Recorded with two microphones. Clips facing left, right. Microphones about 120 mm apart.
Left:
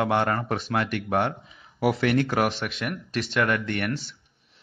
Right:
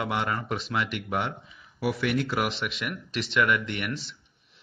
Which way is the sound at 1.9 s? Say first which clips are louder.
Left 4 dB; 70° left (ahead or behind).